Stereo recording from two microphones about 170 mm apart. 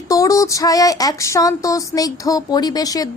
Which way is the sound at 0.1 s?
20° left (ahead or behind).